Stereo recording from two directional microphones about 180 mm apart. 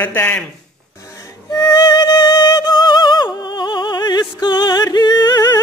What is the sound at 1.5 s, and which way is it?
Music, 20° left (ahead or behind).